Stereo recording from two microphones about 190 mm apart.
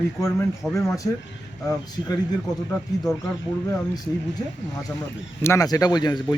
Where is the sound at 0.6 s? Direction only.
5° left (ahead or behind).